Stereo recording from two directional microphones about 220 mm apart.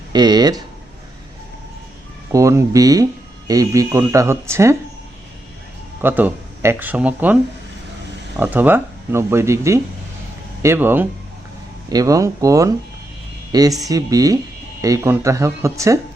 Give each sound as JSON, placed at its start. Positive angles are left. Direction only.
{"t": 0.1, "sound": "speech", "side_deg": -20}
{"t": 2.3, "sound": "speech", "side_deg": -15}
{"t": 6.0, "sound": "speech", "side_deg": -10}
{"t": 8.4, "sound": "speech", "side_deg": -10}